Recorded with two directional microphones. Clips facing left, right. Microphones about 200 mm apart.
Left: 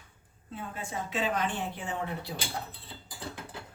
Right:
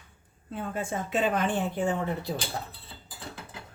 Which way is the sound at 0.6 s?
50° right (ahead or behind).